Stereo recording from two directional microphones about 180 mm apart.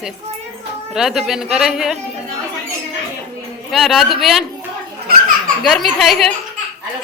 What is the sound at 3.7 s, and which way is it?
Speech, centre (ahead or behind).